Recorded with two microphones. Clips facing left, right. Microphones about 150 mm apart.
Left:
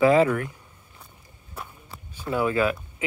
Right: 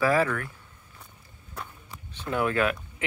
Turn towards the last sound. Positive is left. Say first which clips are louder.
# left 2 dB
turn(degrees=5)  # may be behind; listen again after turning